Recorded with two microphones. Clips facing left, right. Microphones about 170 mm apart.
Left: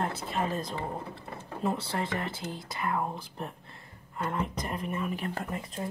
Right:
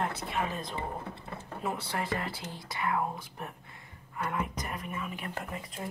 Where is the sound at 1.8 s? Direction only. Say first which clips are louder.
Left 1 dB; 25° left (ahead or behind).